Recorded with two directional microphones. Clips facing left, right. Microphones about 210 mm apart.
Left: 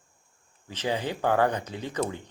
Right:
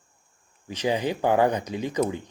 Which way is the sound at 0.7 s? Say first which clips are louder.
Right 4 dB; 15° right (ahead or behind).